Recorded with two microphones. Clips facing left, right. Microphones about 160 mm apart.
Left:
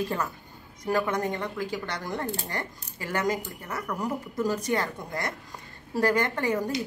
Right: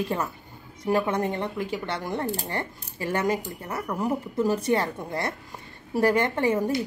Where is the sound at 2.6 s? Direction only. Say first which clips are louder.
Right 4 dB; 25° right (ahead or behind).